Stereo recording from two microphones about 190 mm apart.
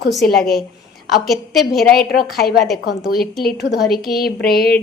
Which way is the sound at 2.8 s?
55° left (ahead or behind).